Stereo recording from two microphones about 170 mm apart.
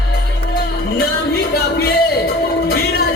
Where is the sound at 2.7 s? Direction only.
70° left (ahead or behind).